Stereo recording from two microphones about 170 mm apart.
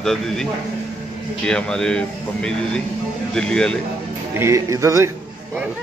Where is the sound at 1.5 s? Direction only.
5° left (ahead or behind).